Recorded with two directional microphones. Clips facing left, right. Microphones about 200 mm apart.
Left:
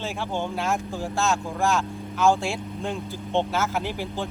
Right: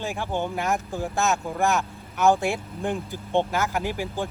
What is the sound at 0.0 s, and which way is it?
Speech, 15° right (ahead or behind).